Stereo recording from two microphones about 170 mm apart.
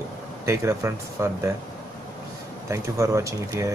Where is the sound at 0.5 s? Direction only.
15° right (ahead or behind).